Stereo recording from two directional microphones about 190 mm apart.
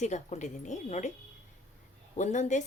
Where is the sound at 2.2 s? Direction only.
40° left (ahead or behind).